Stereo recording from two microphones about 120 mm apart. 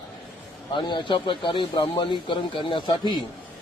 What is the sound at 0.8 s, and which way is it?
Speech, 40° left (ahead or behind).